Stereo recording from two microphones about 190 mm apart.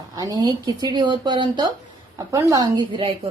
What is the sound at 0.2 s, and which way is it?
Speech, 20° right (ahead or behind).